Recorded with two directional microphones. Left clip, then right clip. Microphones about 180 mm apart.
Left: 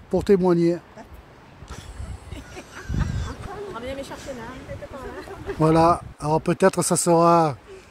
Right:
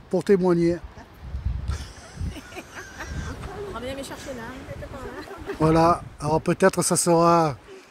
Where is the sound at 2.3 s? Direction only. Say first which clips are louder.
Right 1 dB; 40° right (ahead or behind).